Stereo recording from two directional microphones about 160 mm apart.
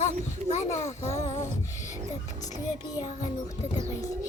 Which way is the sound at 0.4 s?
45° left (ahead or behind).